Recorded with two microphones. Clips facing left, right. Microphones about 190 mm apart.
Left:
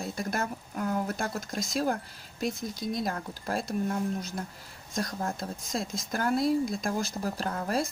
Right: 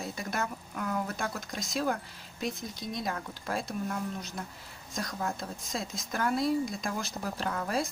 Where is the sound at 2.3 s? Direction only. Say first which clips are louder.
Left 4 dB; centre (ahead or behind).